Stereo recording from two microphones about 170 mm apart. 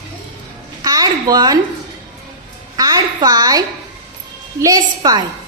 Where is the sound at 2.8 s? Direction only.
20° right (ahead or behind).